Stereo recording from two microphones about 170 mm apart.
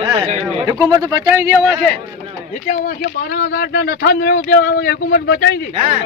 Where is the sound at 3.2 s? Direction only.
70° left (ahead or behind).